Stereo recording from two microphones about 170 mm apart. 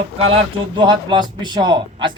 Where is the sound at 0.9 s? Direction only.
25° right (ahead or behind).